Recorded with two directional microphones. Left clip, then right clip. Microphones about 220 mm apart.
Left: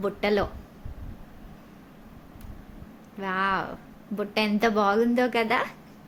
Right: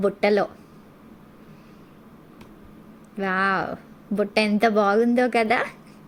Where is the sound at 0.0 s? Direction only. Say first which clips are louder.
Right 5 dB; 20° right (ahead or behind).